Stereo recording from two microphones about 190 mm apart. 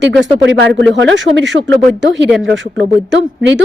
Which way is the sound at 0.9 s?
70° right (ahead or behind).